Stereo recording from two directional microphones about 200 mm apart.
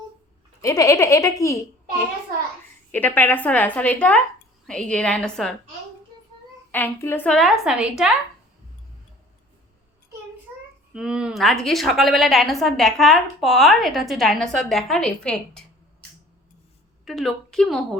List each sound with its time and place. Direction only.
0.6 s a woman's voice: 15° left (ahead or behind)
2.9 s a woman's voice: 10° left (ahead or behind)
6.7 s a woman's voice: 10° left (ahead or behind)
10.9 s a woman's voice: 5° right (ahead or behind)
17.1 s a woman's voice: centre (ahead or behind)